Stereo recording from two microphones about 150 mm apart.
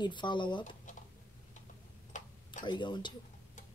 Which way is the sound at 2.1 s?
55° left (ahead or behind).